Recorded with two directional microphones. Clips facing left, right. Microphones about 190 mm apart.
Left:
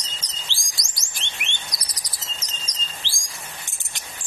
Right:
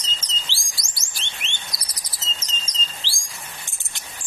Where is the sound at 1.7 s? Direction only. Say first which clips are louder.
Left 1 dB; 5° right (ahead or behind).